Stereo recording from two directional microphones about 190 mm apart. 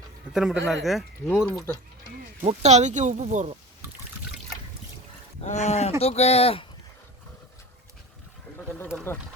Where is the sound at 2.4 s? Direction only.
35° right (ahead or behind).